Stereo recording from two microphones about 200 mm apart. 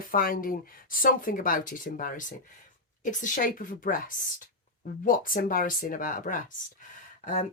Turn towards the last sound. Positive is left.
turn(degrees=40)  # may be behind; listen again after turning